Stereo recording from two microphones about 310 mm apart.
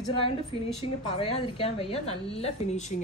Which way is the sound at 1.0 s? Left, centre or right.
Centre.